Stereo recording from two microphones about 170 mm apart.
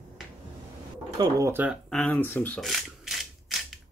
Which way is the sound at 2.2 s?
10° left (ahead or behind).